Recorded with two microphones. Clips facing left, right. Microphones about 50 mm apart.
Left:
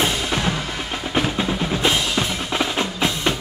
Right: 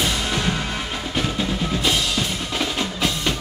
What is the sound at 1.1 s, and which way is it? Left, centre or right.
Drum, left.